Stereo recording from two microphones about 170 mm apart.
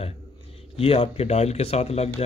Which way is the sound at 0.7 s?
35° left (ahead or behind).